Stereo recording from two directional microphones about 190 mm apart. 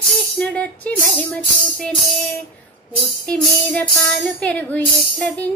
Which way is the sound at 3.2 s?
5° left (ahead or behind).